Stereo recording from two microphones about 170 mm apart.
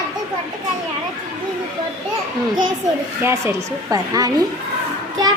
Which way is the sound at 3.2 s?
15° right (ahead or behind).